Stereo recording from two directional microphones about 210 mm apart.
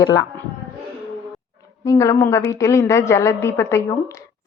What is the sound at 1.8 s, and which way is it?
A woman's voice, 15° left (ahead or behind).